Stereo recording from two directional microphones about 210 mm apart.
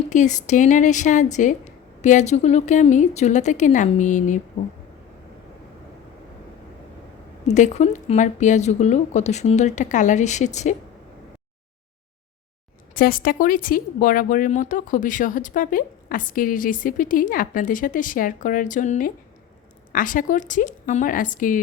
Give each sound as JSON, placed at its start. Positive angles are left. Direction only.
{"t": 0.1, "sound": "speech", "side_deg": 35}
{"t": 7.4, "sound": "speech", "side_deg": 35}
{"t": 13.0, "sound": "speech", "side_deg": 45}